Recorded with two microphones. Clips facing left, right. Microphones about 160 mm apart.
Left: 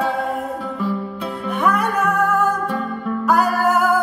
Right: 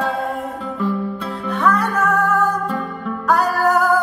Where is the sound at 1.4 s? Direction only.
15° left (ahead or behind).